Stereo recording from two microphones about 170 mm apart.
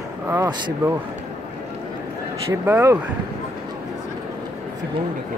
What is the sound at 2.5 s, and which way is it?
Speech, 15° right (ahead or behind).